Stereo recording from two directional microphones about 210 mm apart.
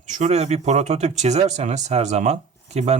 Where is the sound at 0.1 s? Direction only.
35° right (ahead or behind).